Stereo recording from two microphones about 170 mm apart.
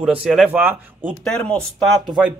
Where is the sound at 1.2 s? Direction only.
5° left (ahead or behind).